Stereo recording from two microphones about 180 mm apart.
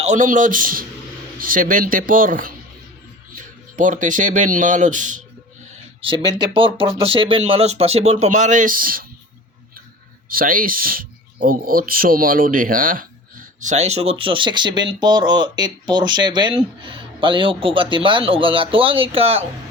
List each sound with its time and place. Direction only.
0.0 s speech: 40° right (ahead or behind)
3.8 s speech: 45° right (ahead or behind)
6.0 s speech: 25° right (ahead or behind); by 9.0 s 50° right (ahead or behind)
10.2 s speech: 50° right (ahead or behind)
13.6 s speech: 40° right (ahead or behind)